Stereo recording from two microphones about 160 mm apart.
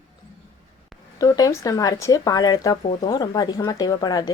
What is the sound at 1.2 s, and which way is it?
Speech, 20° left (ahead or behind).